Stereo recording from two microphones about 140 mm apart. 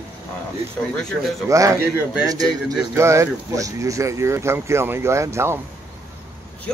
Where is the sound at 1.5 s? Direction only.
25° right (ahead or behind).